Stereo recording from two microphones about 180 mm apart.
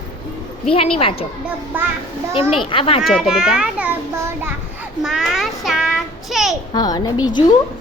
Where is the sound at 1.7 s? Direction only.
10° right (ahead or behind).